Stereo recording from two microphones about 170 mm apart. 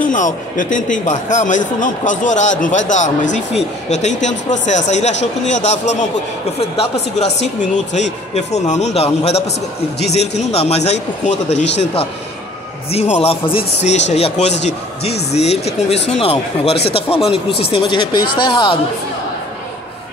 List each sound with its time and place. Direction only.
0.0 s a man's voice: 50° left (ahead or behind)
7.9 s speech: 40° left (ahead or behind)
12.9 s speech: 40° left (ahead or behind)